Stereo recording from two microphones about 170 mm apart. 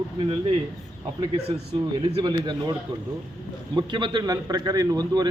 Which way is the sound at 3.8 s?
25° right (ahead or behind).